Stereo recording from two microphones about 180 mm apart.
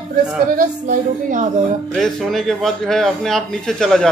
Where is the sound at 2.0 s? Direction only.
Centre (ahead or behind).